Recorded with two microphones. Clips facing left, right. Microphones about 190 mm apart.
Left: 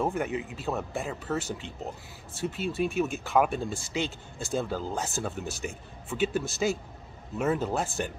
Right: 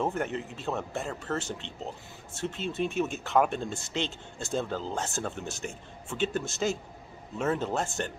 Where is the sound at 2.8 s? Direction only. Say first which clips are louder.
Left 1 dB; centre (ahead or behind).